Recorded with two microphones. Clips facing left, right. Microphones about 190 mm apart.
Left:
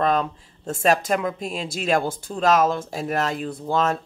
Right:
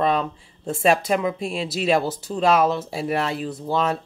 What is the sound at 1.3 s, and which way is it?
Speech, 45° left (ahead or behind).